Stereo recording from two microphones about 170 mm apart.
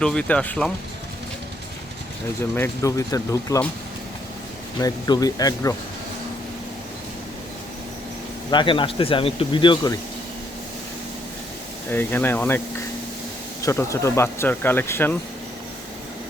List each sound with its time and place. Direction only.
0.0 s speech: 5° left (ahead or behind)
2.6 s speech: 20° left (ahead or behind)
4.8 s speech: 25° left (ahead or behind)
8.4 s speech: 30° left (ahead or behind)
11.9 s speech: 10° left (ahead or behind)